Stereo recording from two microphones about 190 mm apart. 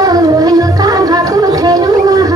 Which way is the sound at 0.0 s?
20° right (ahead or behind).